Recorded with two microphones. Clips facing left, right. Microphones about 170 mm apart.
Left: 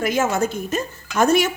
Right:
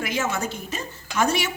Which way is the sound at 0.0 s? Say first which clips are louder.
Left 6 dB; 50° left (ahead or behind).